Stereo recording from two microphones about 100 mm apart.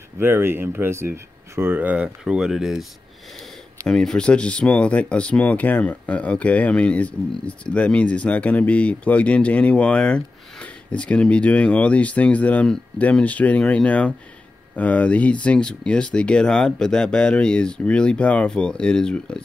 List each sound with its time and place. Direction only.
0.2 s speech: 20° right (ahead or behind); by 19.4 s 10° left (ahead or behind)